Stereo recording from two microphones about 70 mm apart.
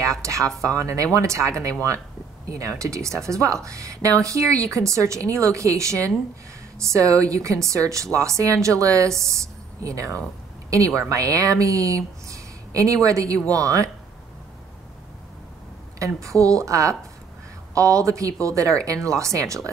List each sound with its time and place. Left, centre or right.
0.2 s speech: right
16.0 s speech: right